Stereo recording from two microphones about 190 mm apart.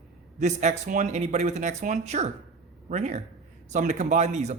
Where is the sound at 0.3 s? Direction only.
35° right (ahead or behind).